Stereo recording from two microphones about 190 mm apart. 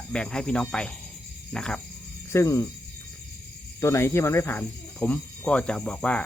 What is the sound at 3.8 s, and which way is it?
Speech, 15° left (ahead or behind).